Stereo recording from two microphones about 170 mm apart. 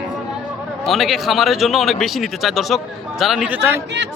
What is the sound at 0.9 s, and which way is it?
A man's voice, centre (ahead or behind).